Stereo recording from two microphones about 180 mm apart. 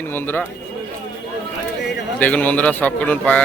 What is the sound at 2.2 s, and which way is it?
A man's voice, 10° left (ahead or behind).